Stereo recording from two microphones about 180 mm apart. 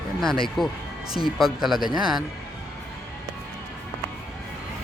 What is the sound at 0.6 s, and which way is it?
A man's voice, centre (ahead or behind).